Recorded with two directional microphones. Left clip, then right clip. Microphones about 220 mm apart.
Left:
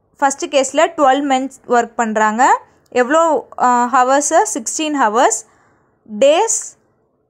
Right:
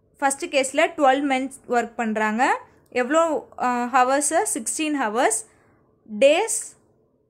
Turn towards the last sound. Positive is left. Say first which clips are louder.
# left 7 dB
turn(degrees=15)  # may be behind; listen again after turning